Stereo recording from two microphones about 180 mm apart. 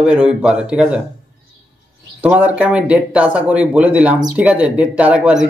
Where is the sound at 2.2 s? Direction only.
10° right (ahead or behind).